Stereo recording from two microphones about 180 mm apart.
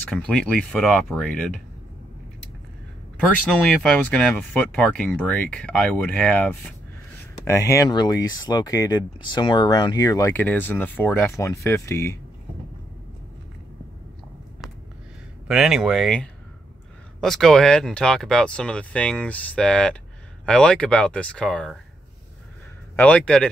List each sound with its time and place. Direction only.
0.1 s speech: 5° left (ahead or behind)
3.4 s speech: 5° left (ahead or behind)
15.4 s speech: 5° right (ahead or behind)
22.9 s speech: 5° left (ahead or behind)